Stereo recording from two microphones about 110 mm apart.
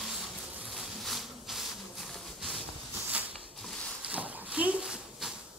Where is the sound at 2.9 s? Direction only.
15° right (ahead or behind).